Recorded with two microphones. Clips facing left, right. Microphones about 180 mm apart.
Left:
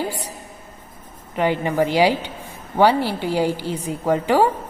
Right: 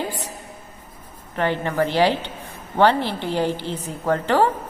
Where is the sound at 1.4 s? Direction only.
15° left (ahead or behind).